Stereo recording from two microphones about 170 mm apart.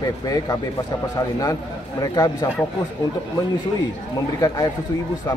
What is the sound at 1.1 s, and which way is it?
A man's voice, 20° left (ahead or behind).